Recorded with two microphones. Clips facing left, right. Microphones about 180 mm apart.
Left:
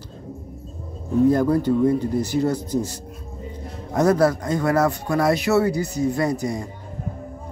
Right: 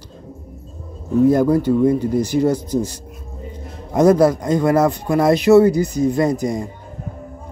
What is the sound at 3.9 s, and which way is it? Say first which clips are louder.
Speech: right 5 dB; 15° right (ahead or behind).